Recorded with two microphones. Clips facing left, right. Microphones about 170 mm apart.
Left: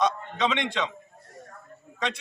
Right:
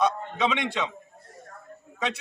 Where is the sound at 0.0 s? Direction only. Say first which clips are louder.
Right 1 dB; 10° right (ahead or behind).